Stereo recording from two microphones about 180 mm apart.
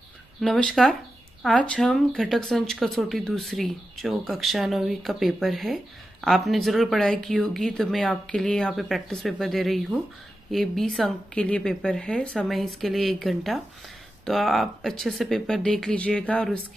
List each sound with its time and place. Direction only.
0.4 s speech: 5° left (ahead or behind)